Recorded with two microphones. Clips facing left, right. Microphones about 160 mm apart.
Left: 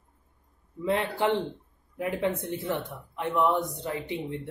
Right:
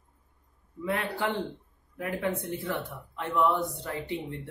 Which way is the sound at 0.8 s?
25° left (ahead or behind).